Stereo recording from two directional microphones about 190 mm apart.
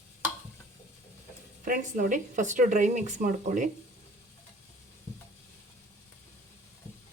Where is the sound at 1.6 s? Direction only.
45° right (ahead or behind).